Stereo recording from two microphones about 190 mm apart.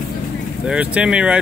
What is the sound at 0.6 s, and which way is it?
Speech, 5° right (ahead or behind).